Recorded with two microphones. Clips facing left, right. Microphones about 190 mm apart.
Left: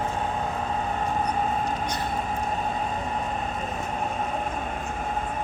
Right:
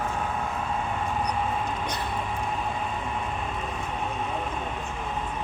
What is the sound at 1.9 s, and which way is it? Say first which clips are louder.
Vehicle: left 2 dB; 40° left (ahead or behind).